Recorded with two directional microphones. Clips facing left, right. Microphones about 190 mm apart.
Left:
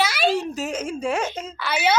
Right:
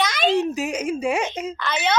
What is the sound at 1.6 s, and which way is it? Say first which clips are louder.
Speech: left 2 dB; 10° left (ahead or behind).